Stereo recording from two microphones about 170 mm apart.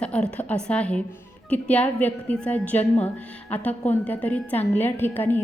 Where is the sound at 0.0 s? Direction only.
5° left (ahead or behind).